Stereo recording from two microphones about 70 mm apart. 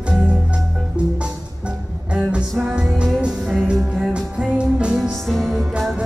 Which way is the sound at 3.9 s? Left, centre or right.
Centre.